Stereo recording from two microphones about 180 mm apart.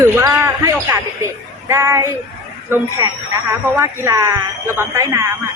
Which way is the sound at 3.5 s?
15° right (ahead or behind).